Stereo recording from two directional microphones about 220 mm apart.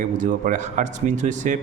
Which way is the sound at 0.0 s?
35° right (ahead or behind).